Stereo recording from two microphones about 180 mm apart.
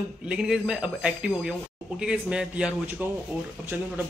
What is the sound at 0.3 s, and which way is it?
Speech, 5° right (ahead or behind).